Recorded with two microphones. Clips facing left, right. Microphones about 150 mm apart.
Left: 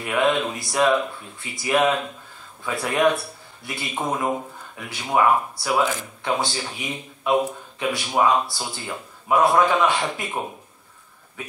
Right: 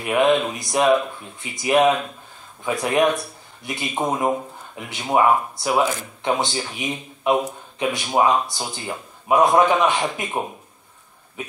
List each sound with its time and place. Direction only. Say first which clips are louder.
0.0 s a man's voice: right 3 dB; 20° right (ahead or behind)